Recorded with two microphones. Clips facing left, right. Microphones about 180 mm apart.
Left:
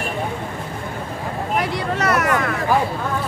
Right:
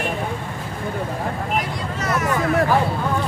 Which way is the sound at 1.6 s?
70° left (ahead or behind).